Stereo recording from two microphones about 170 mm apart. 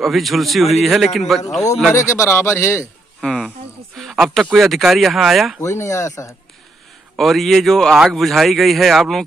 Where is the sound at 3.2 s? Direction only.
5° left (ahead or behind).